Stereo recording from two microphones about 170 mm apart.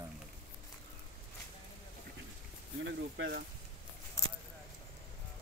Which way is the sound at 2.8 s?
90° right.